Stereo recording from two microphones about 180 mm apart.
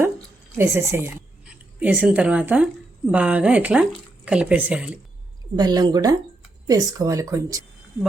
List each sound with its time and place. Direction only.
0.5 s speech: 15° right (ahead or behind)
5.5 s speech: 20° right (ahead or behind)